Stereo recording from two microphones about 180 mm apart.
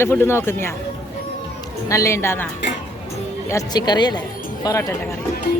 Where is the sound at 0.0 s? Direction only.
15° left (ahead or behind).